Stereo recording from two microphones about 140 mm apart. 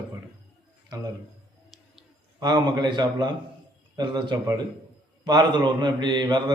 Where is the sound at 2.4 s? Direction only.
30° right (ahead or behind).